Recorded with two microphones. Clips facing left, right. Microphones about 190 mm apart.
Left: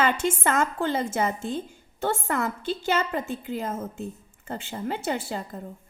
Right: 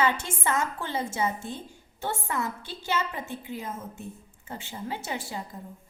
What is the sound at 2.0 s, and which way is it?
A woman's voice, 55° left (ahead or behind).